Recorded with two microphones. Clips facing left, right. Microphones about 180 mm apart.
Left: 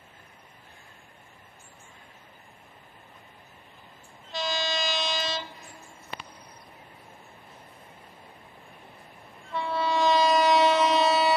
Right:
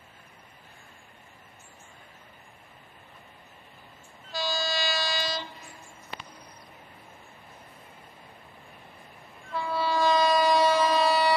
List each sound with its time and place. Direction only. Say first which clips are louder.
4.3 s train: even; centre (ahead or behind)
9.5 s train: left 1 dB; centre (ahead or behind)
9.8 s train: left 1 dB; 20° left (ahead or behind)